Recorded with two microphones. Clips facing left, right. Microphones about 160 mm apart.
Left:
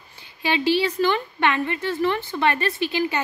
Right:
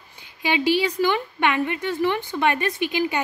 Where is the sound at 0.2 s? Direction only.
15° right (ahead or behind).